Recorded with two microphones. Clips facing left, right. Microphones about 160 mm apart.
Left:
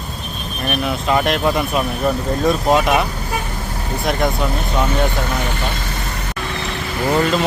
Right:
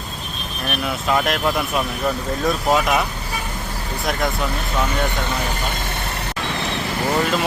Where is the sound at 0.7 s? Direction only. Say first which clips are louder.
Left 3 dB; centre (ahead or behind).